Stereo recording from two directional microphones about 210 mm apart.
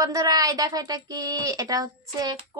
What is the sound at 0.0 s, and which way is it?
A woman's voice, 15° right (ahead or behind).